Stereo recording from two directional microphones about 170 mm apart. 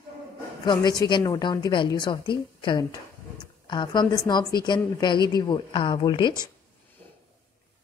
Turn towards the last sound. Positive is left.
turn(degrees=25)  # may be behind; listen again after turning